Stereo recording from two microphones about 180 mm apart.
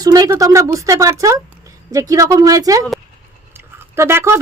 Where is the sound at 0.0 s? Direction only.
20° right (ahead or behind).